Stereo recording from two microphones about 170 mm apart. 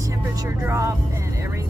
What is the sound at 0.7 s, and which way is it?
Vehicle, 15° right (ahead or behind).